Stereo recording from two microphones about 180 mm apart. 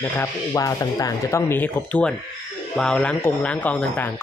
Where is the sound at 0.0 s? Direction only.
15° left (ahead or behind).